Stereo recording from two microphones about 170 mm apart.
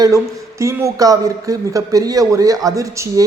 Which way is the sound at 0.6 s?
15° right (ahead or behind).